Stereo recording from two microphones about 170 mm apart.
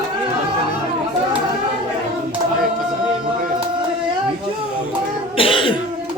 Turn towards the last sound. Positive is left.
turn(degrees=30)  # may be behind; listen again after turning